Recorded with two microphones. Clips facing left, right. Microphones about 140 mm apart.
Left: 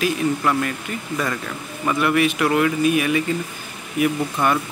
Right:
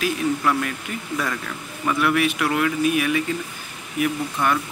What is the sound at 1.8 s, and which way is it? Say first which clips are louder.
Speech: left 2 dB; centre (ahead or behind).